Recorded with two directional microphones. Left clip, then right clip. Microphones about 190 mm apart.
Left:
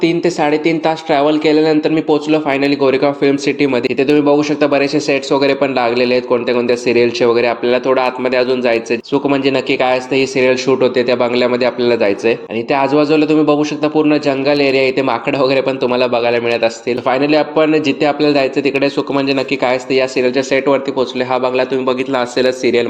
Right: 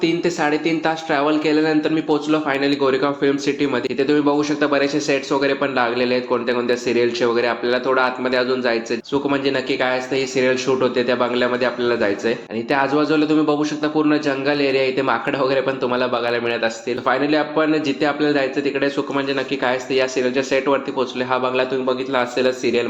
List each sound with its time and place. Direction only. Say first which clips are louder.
0.0 s speech: left 5 dB; 30° left (ahead or behind)